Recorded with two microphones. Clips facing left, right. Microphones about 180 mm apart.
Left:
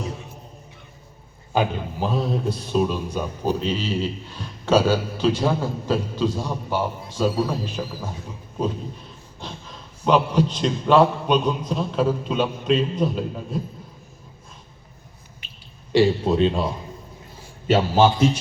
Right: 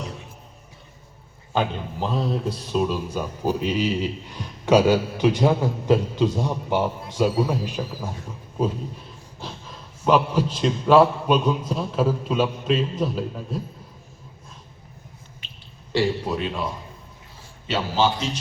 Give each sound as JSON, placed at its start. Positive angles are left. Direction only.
{"t": 1.5, "sound": "a man's voice", "side_deg": 0}
{"t": 9.4, "sound": "a sound", "side_deg": -5}
{"t": 10.0, "sound": "a man's voice", "side_deg": -5}
{"t": 15.9, "sound": "speech", "side_deg": 20}
{"t": 17.7, "sound": "a man's voice", "side_deg": 50}